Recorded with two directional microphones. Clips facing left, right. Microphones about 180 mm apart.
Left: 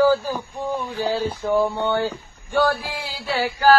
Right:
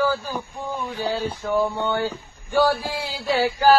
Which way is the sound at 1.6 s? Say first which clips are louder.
Left 2 dB; 10° left (ahead or behind).